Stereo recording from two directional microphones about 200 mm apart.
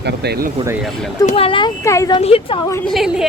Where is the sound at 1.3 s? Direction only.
30° left (ahead or behind).